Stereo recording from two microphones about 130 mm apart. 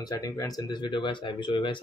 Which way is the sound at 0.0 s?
25° left (ahead or behind).